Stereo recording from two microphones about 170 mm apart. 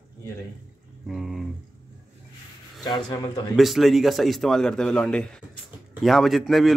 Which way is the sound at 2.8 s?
25° left (ahead or behind).